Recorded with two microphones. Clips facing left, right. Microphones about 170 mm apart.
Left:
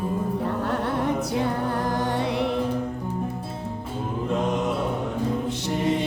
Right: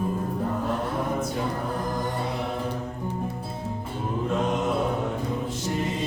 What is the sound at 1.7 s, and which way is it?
Music, 75° left (ahead or behind).